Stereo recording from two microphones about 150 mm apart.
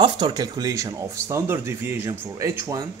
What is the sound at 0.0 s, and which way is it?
Speech, 30° right (ahead or behind).